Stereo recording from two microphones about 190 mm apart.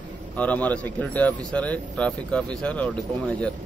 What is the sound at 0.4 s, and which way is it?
Speech, 5° left (ahead or behind).